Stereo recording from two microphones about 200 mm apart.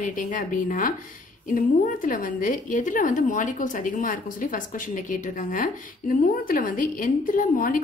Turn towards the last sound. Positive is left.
turn(degrees=45)  # may be behind; listen again after turning